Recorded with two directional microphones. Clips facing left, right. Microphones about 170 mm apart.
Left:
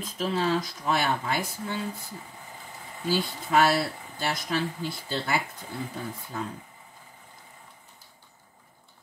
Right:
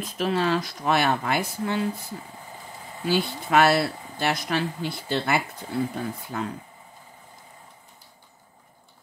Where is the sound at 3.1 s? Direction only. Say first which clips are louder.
Right 3 dB; 70° right (ahead or behind).